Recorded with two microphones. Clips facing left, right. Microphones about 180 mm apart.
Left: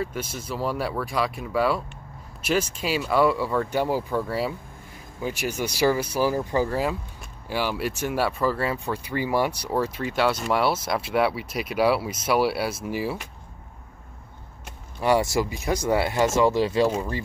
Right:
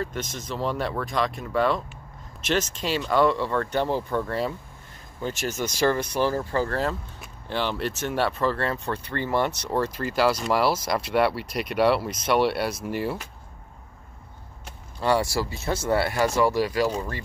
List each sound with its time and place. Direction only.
0.0 s speech: 10° left (ahead or behind)
15.0 s speech: 15° left (ahead or behind)